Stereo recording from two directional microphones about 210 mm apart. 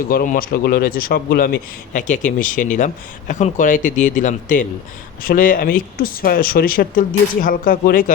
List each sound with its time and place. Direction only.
0.1 s a man's voice: 40° left (ahead or behind)